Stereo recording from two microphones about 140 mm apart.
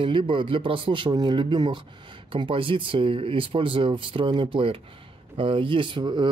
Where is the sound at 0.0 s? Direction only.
40° right (ahead or behind).